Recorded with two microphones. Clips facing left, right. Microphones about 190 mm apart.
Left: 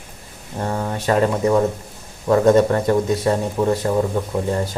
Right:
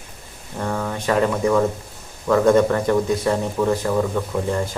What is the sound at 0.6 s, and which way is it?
A man's voice, 30° left (ahead or behind).